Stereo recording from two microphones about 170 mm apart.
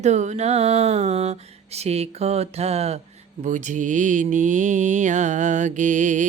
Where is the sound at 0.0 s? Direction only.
45° right (ahead or behind).